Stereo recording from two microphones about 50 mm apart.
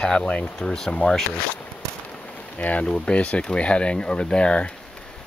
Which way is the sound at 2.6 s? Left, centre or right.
Left.